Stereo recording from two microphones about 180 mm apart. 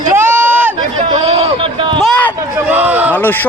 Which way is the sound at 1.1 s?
35° right (ahead or behind).